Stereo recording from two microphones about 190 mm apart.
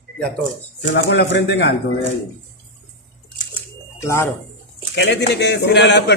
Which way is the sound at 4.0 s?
15° left (ahead or behind).